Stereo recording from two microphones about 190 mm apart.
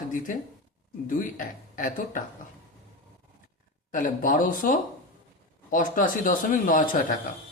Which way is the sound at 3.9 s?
45° left (ahead or behind).